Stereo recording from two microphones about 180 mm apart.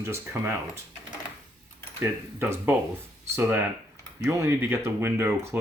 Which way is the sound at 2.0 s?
10° right (ahead or behind).